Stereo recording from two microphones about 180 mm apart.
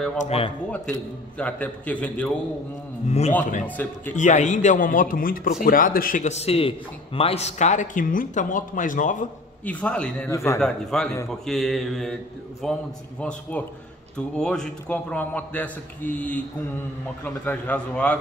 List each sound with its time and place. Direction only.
0.2 s speech: 35° left (ahead or behind)
1.4 s a man's voice: 10° left (ahead or behind)
3.1 s speech: 35° left (ahead or behind)
3.6 s a man's voice: 10° left (ahead or behind)
4.1 s speech: 40° left (ahead or behind)
9.7 s a man's voice: 5° left (ahead or behind)
10.3 s a man's voice: 15° left (ahead or behind)
10.6 s mantra: 5° left (ahead or behind)
13.2 s a man's voice: 5° left (ahead or behind)